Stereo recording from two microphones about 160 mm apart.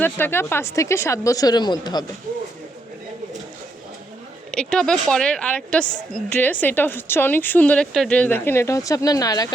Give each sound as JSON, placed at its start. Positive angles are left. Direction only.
{"t": 0.0, "sound": "a woman's voice", "side_deg": 15}
{"t": 4.5, "sound": "a woman's voice", "side_deg": 5}